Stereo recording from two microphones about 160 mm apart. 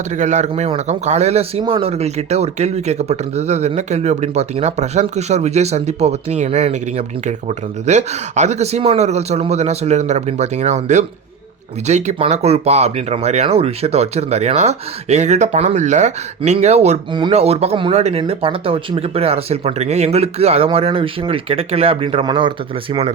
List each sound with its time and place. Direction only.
0.1 s speech: 50° right (ahead or behind)
17.1 s speech: 30° right (ahead or behind)
17.3 s speech: 40° right (ahead or behind)